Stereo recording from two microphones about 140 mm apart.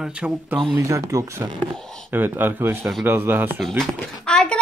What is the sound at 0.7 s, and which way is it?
Speech, 20° right (ahead or behind).